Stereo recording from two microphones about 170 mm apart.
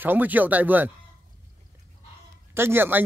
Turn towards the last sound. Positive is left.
turn(degrees=-10)  # may be behind; listen again after turning